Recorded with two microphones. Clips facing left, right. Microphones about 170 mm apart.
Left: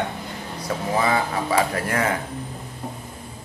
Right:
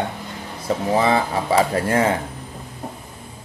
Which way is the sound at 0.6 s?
25° right (ahead or behind).